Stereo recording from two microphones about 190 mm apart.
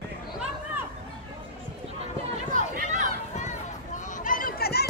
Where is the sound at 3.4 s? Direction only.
40° left (ahead or behind); by 4.8 s 55° left (ahead or behind).